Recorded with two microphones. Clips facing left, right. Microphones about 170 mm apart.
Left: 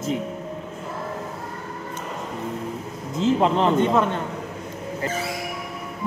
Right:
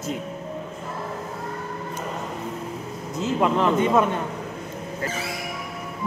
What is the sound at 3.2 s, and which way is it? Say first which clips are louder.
Speech: left 2 dB; 25° left (ahead or behind).